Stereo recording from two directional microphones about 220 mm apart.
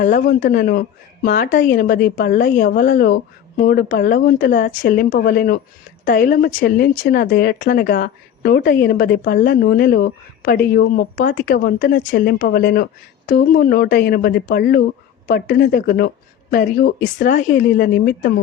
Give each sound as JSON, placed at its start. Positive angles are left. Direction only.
{"t": 0.0, "sound": "a woman's voice", "side_deg": 40}